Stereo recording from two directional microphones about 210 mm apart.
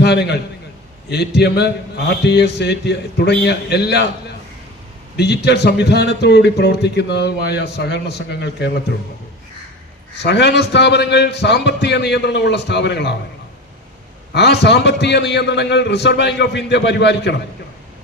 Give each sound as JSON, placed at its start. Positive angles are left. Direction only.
{"t": 0.0, "sound": "speech", "side_deg": 50}
{"t": 5.1, "sound": "speech", "side_deg": 50}
{"t": 10.2, "sound": "speech", "side_deg": 55}
{"t": 14.3, "sound": "speech", "side_deg": 55}